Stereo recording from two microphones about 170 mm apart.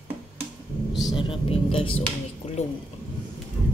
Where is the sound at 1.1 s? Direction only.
30° left (ahead or behind).